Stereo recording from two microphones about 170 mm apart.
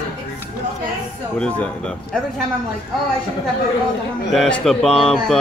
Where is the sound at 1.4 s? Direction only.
5° left (ahead or behind).